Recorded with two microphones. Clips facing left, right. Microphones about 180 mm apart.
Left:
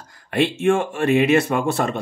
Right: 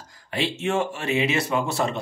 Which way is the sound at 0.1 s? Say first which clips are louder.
Left 7 dB; 55° left (ahead or behind).